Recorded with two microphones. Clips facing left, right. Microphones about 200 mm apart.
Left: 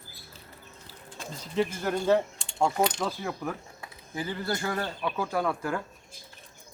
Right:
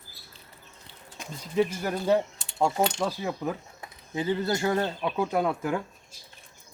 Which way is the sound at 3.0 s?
20° right (ahead or behind).